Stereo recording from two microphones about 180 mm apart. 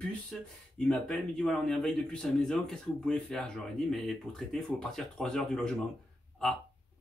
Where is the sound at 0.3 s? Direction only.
5° left (ahead or behind).